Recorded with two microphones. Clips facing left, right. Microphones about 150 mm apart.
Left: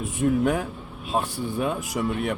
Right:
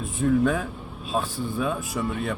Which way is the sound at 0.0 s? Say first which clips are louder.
Even; 20° left (ahead or behind).